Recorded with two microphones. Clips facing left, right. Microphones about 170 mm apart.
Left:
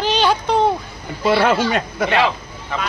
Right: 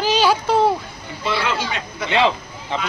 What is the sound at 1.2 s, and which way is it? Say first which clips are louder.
Speech: left 7 dB; 50° left (ahead or behind).